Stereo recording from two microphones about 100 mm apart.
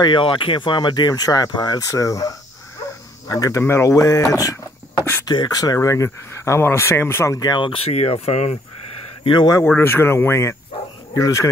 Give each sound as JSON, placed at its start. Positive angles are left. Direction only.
{"t": 0.0, "sound": "speech", "side_deg": 55}
{"t": 7.3, "sound": "speech", "side_deg": 45}
{"t": 9.2, "sound": "speech", "side_deg": 55}
{"t": 9.8, "sound": "speech", "side_deg": 20}